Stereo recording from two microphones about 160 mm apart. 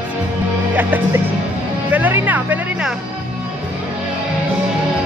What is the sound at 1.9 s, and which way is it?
Speech, 10° right (ahead or behind).